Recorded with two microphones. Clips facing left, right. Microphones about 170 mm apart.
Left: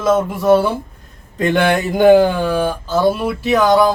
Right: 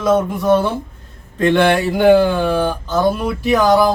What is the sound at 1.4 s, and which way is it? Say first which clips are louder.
Speech: right 2 dB; 15° left (ahead or behind).